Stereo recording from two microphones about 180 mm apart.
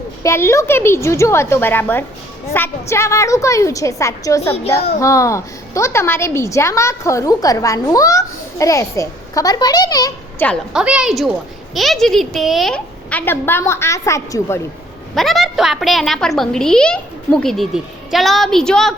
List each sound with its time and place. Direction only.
0.2 s a woman's voice: 15° left (ahead or behind)
10.4 s a woman's voice: centre (ahead or behind)
15.1 s a woman's voice: centre (ahead or behind)